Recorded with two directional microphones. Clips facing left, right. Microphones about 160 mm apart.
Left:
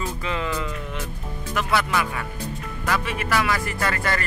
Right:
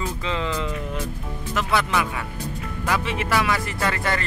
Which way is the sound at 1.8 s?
15° right (ahead or behind).